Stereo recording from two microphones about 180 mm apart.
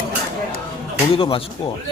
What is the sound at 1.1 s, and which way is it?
Speech, 30° left (ahead or behind).